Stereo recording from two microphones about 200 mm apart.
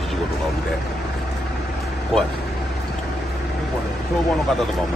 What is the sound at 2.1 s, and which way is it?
Speech, centre (ahead or behind).